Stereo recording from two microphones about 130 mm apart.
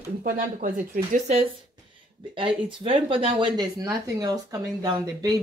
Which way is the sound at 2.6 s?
40° right (ahead or behind).